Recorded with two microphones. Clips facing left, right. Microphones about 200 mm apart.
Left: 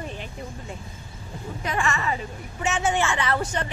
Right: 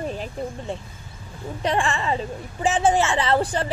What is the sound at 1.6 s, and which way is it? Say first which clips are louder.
A woman's voice: right 4 dB; 30° right (ahead or behind).